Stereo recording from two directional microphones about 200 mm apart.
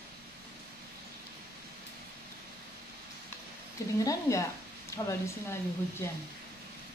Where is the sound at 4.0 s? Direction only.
15° left (ahead or behind).